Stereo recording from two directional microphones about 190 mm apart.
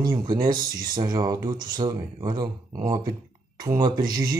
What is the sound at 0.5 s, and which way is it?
Speech, 50° right (ahead or behind).